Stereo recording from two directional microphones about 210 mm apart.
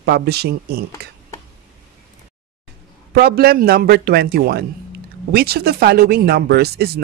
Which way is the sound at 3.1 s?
45° right (ahead or behind).